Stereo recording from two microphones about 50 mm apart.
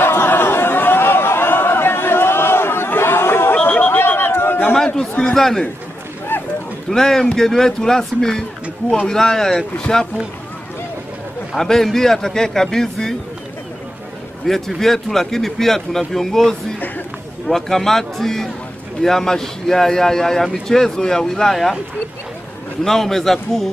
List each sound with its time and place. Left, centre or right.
0.0 s a sound: left
3.6 s a sound: left
4.2 s chatter: left
4.7 s a man's voice: centre
6.3 s a sound: left
6.9 s a man's voice: centre
11.5 s a man's voice: centre
14.4 s a man's voice: centre
22.8 s a man's voice: centre